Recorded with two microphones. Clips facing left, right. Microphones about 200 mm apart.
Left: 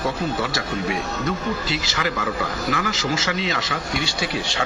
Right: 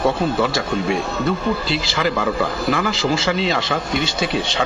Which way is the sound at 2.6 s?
30° right (ahead or behind).